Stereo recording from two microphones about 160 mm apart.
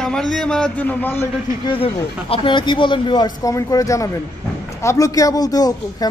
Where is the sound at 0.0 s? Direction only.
5° left (ahead or behind).